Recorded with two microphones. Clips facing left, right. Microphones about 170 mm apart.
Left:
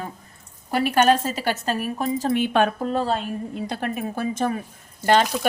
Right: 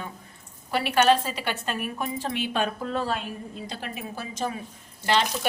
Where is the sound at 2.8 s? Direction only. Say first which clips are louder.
Left 5 dB; 35° left (ahead or behind).